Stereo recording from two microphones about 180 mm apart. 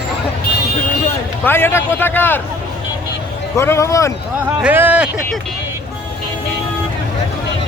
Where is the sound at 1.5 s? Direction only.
10° left (ahead or behind).